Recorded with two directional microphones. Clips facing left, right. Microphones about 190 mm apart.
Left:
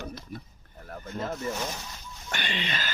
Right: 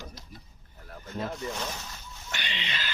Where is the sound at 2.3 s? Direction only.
50° left (ahead or behind).